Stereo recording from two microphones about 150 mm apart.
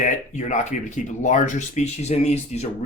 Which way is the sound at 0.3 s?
55° left (ahead or behind).